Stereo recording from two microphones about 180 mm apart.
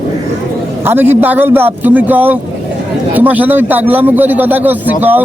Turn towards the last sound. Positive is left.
turn(degrees=-10)  # may be behind; listen again after turning